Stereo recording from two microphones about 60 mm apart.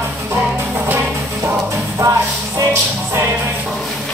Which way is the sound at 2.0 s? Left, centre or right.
Right.